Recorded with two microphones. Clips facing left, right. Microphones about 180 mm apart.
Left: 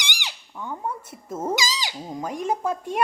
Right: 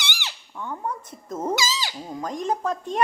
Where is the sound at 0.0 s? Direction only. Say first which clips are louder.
Right 1 dB; 15° left (ahead or behind).